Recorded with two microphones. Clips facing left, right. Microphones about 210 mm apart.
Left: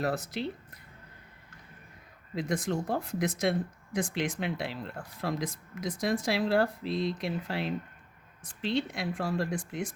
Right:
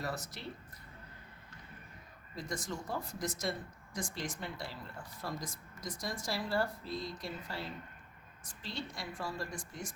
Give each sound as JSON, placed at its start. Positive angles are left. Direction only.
{"t": 0.0, "sound": "speech", "side_deg": 60}
{"t": 2.3, "sound": "speech", "side_deg": 65}
{"t": 8.9, "sound": "speech", "side_deg": 65}